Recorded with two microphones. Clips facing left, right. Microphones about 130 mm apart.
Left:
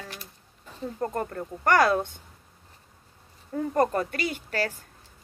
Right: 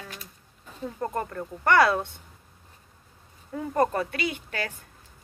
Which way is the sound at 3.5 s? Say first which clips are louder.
Left 1 dB; 40° left (ahead or behind).